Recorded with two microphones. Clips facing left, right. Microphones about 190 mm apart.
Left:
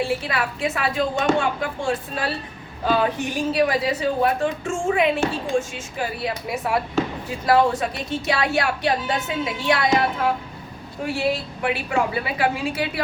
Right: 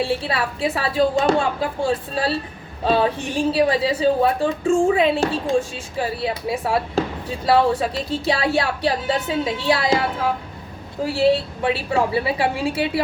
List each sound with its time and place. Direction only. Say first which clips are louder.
0.0 s a woman's voice: right 2 dB; 30° right (ahead or behind)
11.0 s a woman's voice: right 6 dB; 30° right (ahead or behind)